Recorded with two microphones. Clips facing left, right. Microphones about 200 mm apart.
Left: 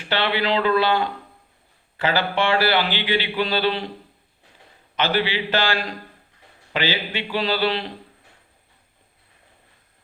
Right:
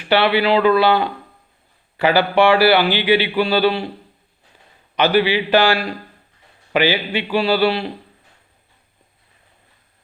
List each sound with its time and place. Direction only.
0.1 s speech: 15° right (ahead or behind)
4.9 s speech: 15° right (ahead or behind)